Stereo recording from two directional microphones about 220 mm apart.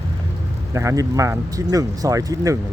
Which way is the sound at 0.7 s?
15° right (ahead or behind).